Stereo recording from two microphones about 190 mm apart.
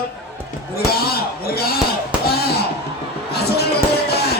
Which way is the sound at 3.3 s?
55° left (ahead or behind).